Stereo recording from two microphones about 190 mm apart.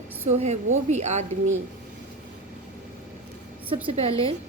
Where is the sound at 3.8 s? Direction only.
30° right (ahead or behind).